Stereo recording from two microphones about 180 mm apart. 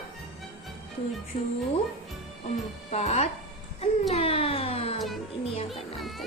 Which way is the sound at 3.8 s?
35° left (ahead or behind).